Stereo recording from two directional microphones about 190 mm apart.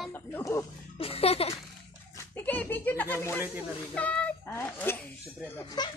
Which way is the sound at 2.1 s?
10° left (ahead or behind).